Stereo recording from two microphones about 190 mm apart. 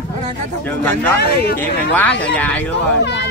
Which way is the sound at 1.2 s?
55° left (ahead or behind).